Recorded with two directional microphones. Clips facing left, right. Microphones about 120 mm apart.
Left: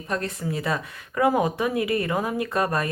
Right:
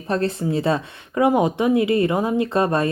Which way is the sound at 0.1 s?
30° right (ahead or behind).